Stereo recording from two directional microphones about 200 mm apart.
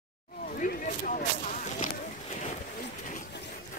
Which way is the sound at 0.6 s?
40° left (ahead or behind).